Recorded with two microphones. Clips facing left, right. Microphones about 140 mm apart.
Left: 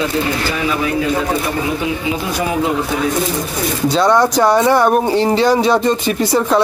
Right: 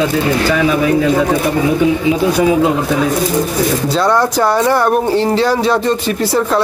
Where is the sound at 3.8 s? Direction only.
5° right (ahead or behind).